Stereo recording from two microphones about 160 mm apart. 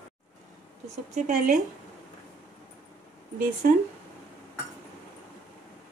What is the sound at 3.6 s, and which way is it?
Speech, 60° right (ahead or behind).